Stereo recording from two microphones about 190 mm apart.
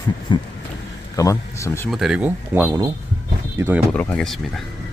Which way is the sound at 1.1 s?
15° left (ahead or behind).